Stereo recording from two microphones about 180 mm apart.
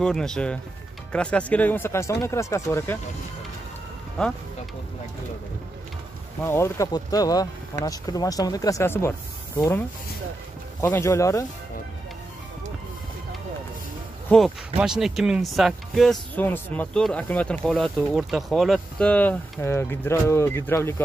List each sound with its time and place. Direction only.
0.0 s speech: 5° left (ahead or behind)
4.2 s speech: 5° left (ahead or behind)
6.4 s speech: 15° left (ahead or behind)
14.3 s speech: 5° left (ahead or behind)